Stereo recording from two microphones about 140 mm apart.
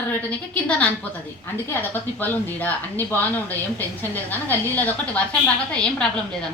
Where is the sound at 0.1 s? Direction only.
10° left (ahead or behind).